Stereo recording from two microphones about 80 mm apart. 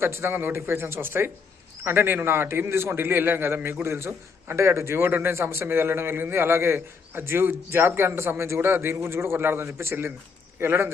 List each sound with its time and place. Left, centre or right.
0.0 s a man's voice: right